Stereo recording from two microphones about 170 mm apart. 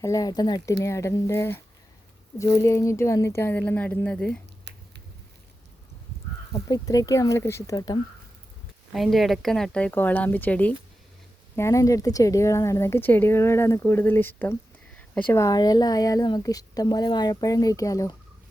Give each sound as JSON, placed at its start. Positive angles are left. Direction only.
{"t": 0.0, "sound": "speech", "side_deg": 20}
{"t": 6.5, "sound": "speech", "side_deg": 20}
{"t": 8.9, "sound": "speech", "side_deg": 0}